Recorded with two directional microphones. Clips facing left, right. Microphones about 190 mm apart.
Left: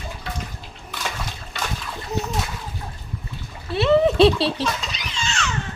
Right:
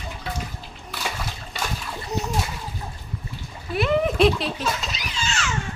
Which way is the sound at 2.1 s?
Centre (ahead or behind).